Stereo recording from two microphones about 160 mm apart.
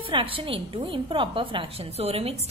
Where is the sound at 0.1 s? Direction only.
35° right (ahead or behind).